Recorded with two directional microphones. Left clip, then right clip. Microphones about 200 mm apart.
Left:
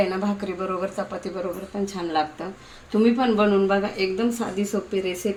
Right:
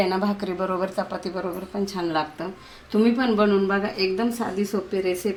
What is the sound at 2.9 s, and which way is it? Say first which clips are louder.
Speech: left 1 dB; 25° right (ahead or behind).